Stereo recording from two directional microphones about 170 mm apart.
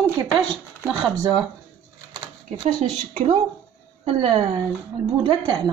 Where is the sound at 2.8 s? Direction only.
40° right (ahead or behind).